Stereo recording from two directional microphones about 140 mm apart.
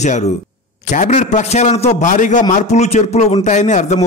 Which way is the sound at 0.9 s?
60° left (ahead or behind).